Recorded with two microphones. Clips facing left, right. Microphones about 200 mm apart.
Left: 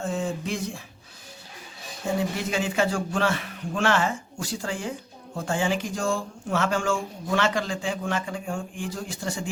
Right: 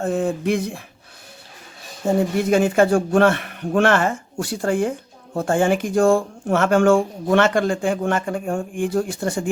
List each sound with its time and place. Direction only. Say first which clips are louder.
0.0 s a man's voice: right 7 dB; 55° right (ahead or behind)
2.1 s a man's voice: right 9 dB; 50° right (ahead or behind)